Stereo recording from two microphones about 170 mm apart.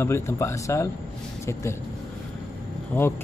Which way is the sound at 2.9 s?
10° left (ahead or behind).